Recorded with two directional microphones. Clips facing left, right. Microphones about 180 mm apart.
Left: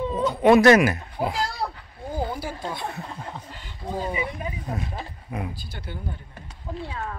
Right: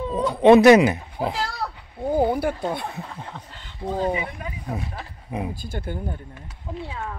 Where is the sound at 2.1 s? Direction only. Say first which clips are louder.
Right 8 dB; 60° right (ahead or behind).